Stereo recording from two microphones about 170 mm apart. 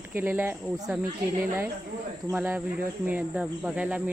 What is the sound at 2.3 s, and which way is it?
Speech, 10° right (ahead or behind).